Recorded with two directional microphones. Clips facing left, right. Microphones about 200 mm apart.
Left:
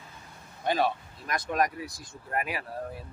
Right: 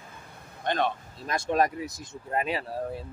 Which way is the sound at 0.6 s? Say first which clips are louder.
Left 1 dB; 5° left (ahead or behind).